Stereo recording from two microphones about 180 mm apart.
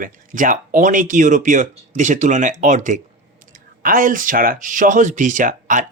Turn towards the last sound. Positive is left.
turn(degrees=-45)  # may be behind; listen again after turning